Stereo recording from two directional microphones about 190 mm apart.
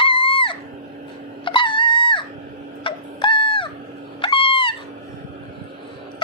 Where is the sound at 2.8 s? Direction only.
25° left (ahead or behind).